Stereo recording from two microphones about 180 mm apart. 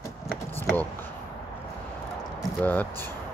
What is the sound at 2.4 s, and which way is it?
Speech, 10° left (ahead or behind).